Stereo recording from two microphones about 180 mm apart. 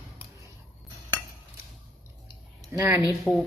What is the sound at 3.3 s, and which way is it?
Cutlery, 5° left (ahead or behind).